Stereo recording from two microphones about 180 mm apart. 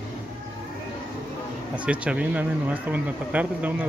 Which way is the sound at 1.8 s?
5° right (ahead or behind).